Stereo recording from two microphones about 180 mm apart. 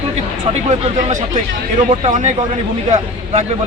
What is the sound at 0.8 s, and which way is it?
Speech, 40° right (ahead or behind).